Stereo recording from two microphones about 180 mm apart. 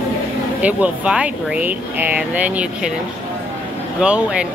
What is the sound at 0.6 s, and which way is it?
Speech, 10° right (ahead or behind).